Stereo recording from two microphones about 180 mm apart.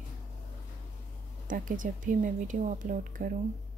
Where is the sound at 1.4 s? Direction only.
50° right (ahead or behind).